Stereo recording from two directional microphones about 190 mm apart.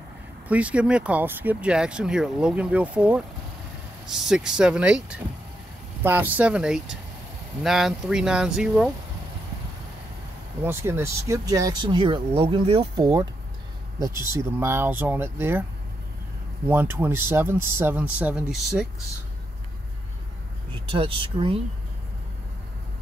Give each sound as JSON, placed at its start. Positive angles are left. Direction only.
{"t": 0.5, "sound": "speech", "side_deg": -5}
{"t": 10.6, "sound": "speech", "side_deg": -15}
{"t": 14.3, "sound": "speech", "side_deg": -15}
{"t": 16.6, "sound": "speech", "side_deg": -10}
{"t": 20.9, "sound": "speech", "side_deg": -30}